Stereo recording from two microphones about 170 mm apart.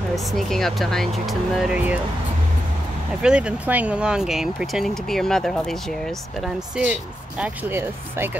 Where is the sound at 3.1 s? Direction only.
5° right (ahead or behind).